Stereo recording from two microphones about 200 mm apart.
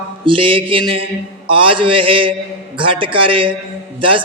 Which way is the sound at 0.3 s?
25° right (ahead or behind).